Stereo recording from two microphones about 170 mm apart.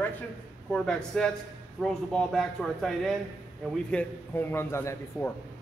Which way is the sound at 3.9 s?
15° left (ahead or behind).